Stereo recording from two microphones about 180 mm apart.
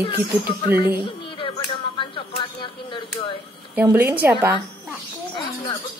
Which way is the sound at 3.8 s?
10° right (ahead or behind).